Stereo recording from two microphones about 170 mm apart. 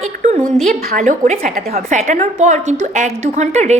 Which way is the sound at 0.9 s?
50° right (ahead or behind).